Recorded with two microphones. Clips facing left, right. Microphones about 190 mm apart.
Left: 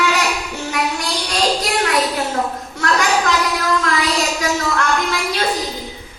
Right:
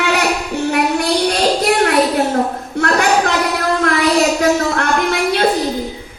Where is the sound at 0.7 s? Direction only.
60° right (ahead or behind).